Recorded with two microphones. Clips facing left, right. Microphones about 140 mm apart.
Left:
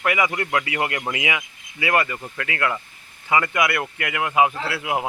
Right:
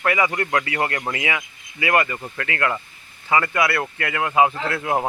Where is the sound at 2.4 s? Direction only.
10° left (ahead or behind).